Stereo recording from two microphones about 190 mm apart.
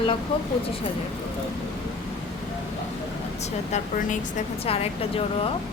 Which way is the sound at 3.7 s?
40° left (ahead or behind).